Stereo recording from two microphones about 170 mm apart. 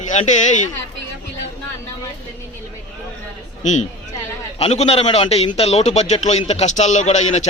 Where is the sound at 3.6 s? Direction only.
45° left (ahead or behind).